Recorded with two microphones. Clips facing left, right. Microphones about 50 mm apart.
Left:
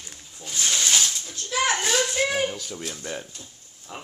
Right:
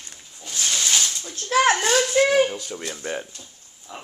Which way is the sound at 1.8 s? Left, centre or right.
Centre.